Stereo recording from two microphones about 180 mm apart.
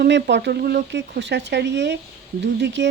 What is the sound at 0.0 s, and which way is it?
Speech, 70° right (ahead or behind).